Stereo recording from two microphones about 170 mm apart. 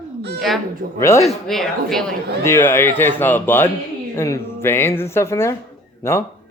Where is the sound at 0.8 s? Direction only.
55° right (ahead or behind).